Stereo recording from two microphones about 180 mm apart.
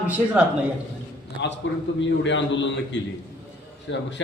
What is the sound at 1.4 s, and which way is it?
Speech, 75° left (ahead or behind).